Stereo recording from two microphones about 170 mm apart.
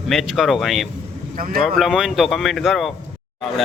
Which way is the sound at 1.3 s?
55° right (ahead or behind).